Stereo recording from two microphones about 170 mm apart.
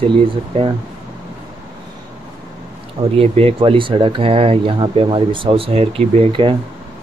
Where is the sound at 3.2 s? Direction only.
35° right (ahead or behind).